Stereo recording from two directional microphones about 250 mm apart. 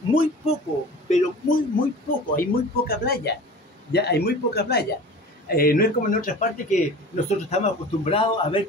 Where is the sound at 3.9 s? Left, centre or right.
Left.